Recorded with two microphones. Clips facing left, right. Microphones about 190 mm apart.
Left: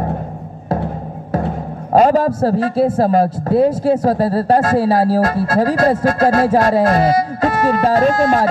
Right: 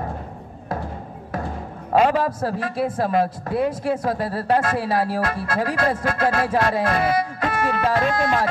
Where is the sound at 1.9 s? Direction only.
40° left (ahead or behind).